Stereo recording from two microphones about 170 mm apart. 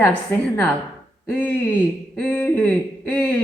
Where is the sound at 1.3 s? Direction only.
10° left (ahead or behind).